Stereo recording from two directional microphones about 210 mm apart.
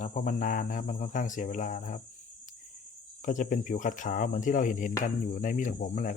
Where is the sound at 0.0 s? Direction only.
40° left (ahead or behind).